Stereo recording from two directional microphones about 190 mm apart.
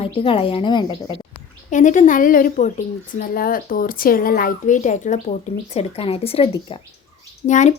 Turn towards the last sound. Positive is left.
turn(degrees=40)  # may be behind; listen again after turning